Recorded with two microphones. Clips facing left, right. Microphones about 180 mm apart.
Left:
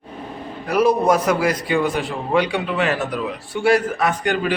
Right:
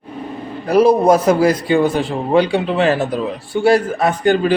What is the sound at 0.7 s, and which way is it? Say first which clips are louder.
A man's voice: right 5 dB; 30° right (ahead or behind).